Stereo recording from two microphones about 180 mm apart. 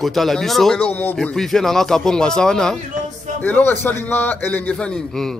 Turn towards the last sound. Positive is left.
turn(degrees=5)  # may be behind; listen again after turning